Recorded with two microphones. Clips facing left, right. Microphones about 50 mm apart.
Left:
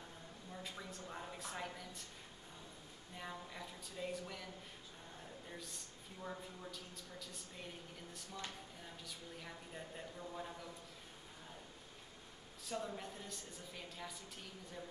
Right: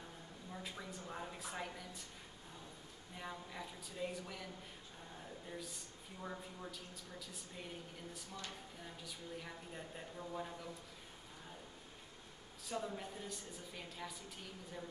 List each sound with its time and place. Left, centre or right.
0.5 s a woman's voice: centre
3.2 s a woman's voice: centre
5.5 s a woman's voice: centre
8.5 s a woman's voice: centre
12.6 s a woman's voice: centre